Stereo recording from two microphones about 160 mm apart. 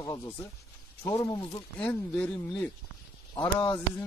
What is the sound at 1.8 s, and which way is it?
Speech, 10° left (ahead or behind).